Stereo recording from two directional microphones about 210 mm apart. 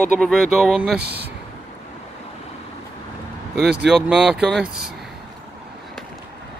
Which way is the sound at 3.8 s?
5° right (ahead or behind).